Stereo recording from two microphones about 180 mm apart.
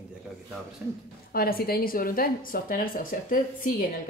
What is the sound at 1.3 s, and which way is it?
A woman's voice, 60° left (ahead or behind).